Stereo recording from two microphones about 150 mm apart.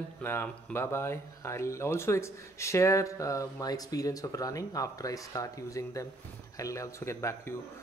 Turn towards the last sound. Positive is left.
turn(degrees=20)  # may be behind; listen again after turning